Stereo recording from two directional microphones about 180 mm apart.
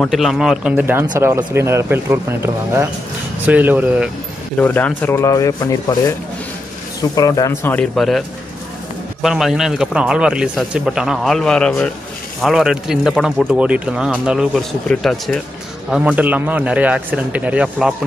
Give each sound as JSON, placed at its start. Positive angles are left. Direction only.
{"t": 0.0, "sound": "a man's voice", "side_deg": 0}
{"t": 4.6, "sound": "speech", "side_deg": 10}
{"t": 9.2, "sound": "a man's voice", "side_deg": 0}